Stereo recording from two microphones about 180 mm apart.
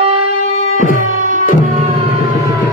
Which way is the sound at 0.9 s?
45° right (ahead or behind).